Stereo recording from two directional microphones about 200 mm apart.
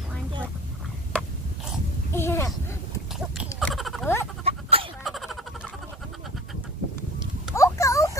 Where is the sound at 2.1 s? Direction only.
10° left (ahead or behind).